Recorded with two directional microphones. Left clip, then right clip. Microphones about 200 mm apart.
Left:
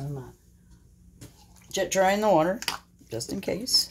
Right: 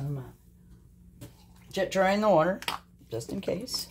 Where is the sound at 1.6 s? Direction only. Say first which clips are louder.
Left 2 dB; 25° left (ahead or behind).